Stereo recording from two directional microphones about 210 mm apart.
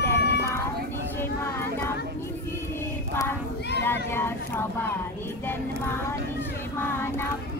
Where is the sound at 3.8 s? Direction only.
10° left (ahead or behind).